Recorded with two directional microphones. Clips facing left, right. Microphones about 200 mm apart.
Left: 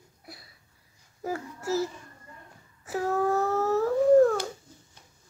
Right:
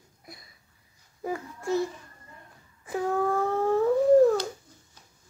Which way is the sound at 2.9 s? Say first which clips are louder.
Even; 5° left (ahead or behind).